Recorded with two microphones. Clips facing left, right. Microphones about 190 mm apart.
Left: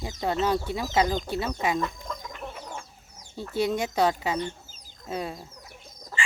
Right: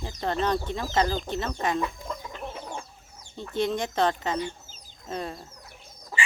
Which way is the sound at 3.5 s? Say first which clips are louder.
Left 1 dB; 10° left (ahead or behind).